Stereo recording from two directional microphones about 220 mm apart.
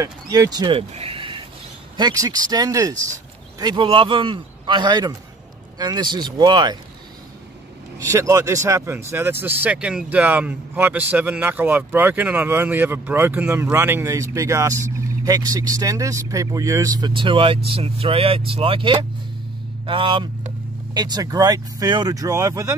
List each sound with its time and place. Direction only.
0.0 s a sound: 15° right (ahead or behind)
2.0 s a man's voice: 15° right (ahead or behind)
8.1 s a man's voice: 15° right (ahead or behind)